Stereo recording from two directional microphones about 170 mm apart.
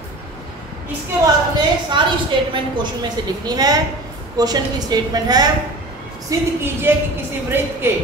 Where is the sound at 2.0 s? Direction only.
25° right (ahead or behind).